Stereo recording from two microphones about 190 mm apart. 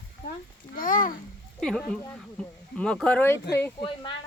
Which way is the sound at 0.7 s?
45° left (ahead or behind).